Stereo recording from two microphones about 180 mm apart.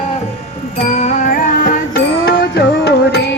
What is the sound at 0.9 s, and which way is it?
Music, 40° left (ahead or behind).